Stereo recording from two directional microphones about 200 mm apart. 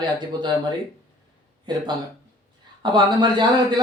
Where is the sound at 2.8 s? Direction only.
25° right (ahead or behind).